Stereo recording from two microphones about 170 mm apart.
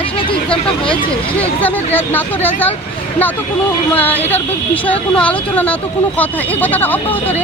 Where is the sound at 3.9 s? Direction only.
10° left (ahead or behind).